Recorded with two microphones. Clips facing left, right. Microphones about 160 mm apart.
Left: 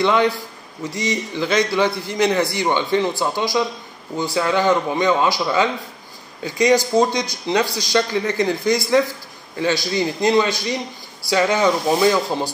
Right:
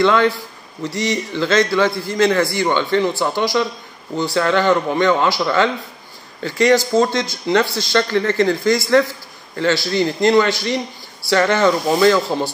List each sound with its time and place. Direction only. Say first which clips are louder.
0.0 s a man's voice: right 2 dB; 20° left (ahead or behind)